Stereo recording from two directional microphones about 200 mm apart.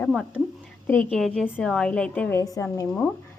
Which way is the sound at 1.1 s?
Centre (ahead or behind).